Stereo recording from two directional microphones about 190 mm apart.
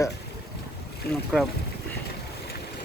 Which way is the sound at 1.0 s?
55° left (ahead or behind).